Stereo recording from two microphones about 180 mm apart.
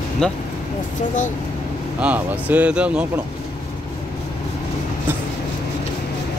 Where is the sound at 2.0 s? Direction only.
10° right (ahead or behind).